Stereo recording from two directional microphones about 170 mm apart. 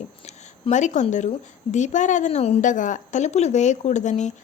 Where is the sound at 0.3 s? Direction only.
45° left (ahead or behind).